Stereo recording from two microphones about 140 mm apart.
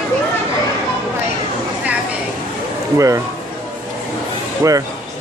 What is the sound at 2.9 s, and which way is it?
Speech, 20° right (ahead or behind).